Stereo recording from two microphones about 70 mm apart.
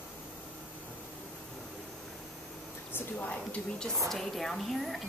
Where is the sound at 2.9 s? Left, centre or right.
Left.